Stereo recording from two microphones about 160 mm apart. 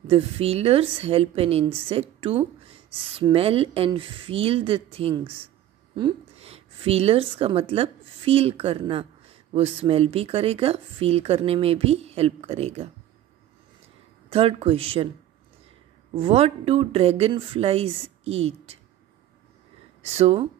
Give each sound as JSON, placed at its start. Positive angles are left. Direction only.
{"t": 0.1, "sound": "speech", "side_deg": -40}
{"t": 14.3, "sound": "speech", "side_deg": -40}
{"t": 16.1, "sound": "speech", "side_deg": -35}
{"t": 20.0, "sound": "speech", "side_deg": -40}